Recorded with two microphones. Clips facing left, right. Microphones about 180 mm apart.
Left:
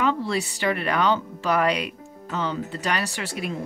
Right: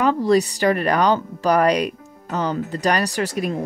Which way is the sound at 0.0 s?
40° right (ahead or behind).